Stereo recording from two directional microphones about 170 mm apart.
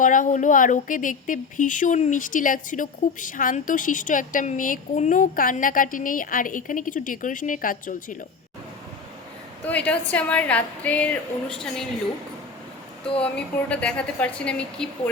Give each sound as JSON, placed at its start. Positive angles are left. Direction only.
{"t": 0.0, "sound": "speech", "side_deg": 50}
{"t": 9.6, "sound": "a woman's voice", "side_deg": 10}
{"t": 13.1, "sound": "a woman's voice", "side_deg": 5}